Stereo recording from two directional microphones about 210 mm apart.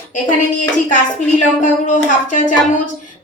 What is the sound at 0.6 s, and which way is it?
Speech, 40° left (ahead or behind).